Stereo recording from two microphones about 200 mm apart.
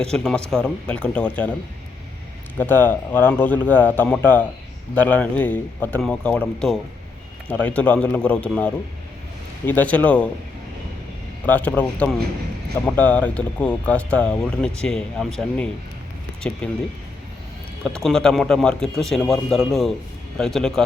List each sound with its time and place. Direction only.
0.1 s speech: 5° left (ahead or behind)
2.6 s speech: 10° left (ahead or behind)
11.4 s speech: 10° left (ahead or behind)
17.8 s speech: 5° left (ahead or behind)